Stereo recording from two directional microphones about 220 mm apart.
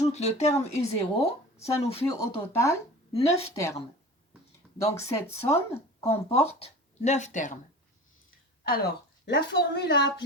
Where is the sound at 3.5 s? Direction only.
15° left (ahead or behind).